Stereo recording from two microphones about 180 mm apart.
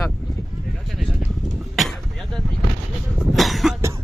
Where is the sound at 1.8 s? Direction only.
Centre (ahead or behind).